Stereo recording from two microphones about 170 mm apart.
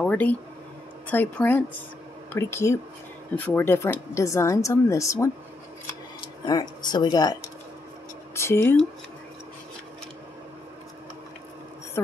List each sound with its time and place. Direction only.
0.0 s speech: 10° left (ahead or behind)
6.4 s speech: 25° left (ahead or behind)